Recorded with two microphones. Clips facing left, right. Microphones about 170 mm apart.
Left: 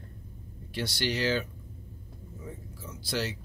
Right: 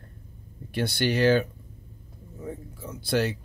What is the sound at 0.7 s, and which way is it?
Speech, 55° right (ahead or behind).